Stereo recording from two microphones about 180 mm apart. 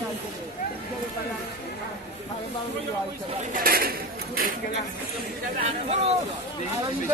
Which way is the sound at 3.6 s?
55° right (ahead or behind).